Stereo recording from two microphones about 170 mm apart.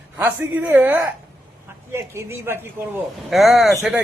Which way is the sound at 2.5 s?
15° right (ahead or behind).